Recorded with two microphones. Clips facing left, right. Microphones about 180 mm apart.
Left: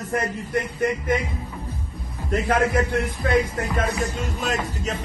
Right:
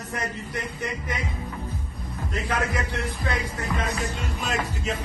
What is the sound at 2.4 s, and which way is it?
Speech, 50° left (ahead or behind).